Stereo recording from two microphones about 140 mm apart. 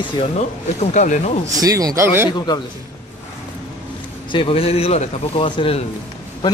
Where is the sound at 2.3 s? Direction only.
30° left (ahead or behind).